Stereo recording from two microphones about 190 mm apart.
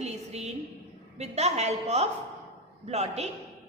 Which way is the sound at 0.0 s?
35° right (ahead or behind).